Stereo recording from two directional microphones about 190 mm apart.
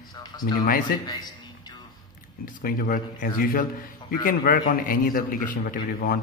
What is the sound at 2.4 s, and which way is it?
A man's voice, 50° left (ahead or behind).